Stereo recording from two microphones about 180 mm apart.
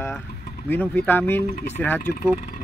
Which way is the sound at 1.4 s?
50° left (ahead or behind).